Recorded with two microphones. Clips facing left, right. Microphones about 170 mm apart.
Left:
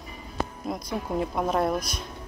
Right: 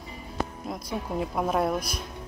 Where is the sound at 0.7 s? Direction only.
Centre (ahead or behind).